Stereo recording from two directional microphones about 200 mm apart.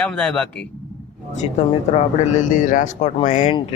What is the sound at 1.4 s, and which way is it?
Speech, 35° left (ahead or behind).